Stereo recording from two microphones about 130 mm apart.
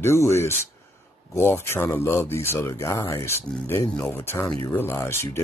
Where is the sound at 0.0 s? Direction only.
20° left (ahead or behind).